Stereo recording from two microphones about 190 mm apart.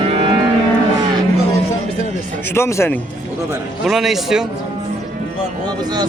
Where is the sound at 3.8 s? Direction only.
Centre (ahead or behind).